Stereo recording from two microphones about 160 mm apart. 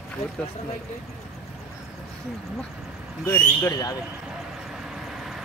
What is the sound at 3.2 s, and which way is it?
Speech, 15° left (ahead or behind).